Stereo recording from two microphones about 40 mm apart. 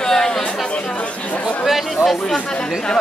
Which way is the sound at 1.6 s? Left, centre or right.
Centre.